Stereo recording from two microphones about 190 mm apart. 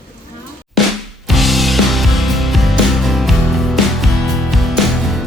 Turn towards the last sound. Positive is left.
turn(degrees=0)  # may be behind; listen again after turning